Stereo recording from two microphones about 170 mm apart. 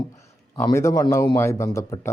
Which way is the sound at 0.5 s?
20° left (ahead or behind).